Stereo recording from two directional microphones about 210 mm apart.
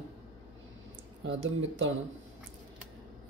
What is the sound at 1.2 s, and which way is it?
Speech, 65° right (ahead or behind).